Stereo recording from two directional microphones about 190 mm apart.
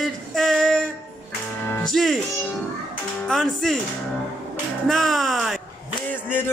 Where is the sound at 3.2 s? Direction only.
5° left (ahead or behind).